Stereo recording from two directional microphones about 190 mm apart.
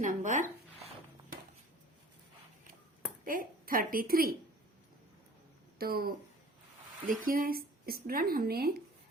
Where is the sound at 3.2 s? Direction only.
45° right (ahead or behind).